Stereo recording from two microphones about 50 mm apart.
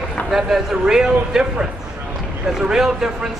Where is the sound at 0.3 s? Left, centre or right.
Centre.